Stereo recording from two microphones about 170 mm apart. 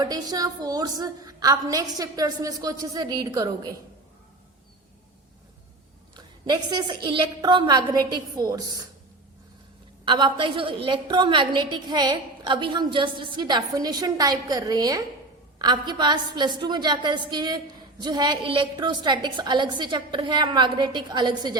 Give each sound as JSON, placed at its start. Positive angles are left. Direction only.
{"t": 0.0, "sound": "a woman's voice", "side_deg": -20}
{"t": 6.1, "sound": "a woman's voice", "side_deg": -25}
{"t": 10.1, "sound": "a woman's voice", "side_deg": -30}